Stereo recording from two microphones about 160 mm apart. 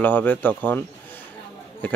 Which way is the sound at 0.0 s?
10° left (ahead or behind).